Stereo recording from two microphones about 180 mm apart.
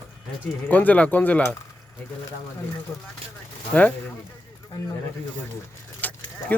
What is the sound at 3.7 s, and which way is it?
Speech, 10° left (ahead or behind).